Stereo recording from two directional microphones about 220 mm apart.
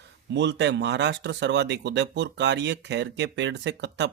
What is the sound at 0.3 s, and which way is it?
Speech, 55° right (ahead or behind).